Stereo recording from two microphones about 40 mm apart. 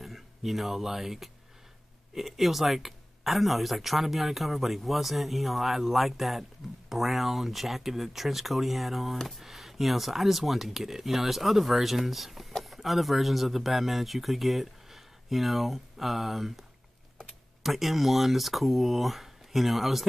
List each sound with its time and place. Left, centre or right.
0.0 s speech: centre
17.6 s speech: centre